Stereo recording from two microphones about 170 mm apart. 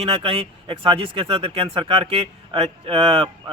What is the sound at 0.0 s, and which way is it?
Speech, 35° right (ahead or behind).